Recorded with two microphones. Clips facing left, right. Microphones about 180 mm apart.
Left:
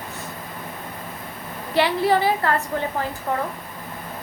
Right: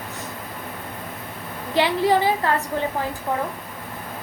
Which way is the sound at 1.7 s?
15° right (ahead or behind).